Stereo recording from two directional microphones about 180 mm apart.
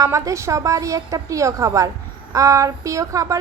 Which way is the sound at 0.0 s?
15° right (ahead or behind).